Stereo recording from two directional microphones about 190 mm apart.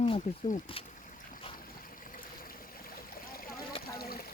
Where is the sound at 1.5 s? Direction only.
30° left (ahead or behind).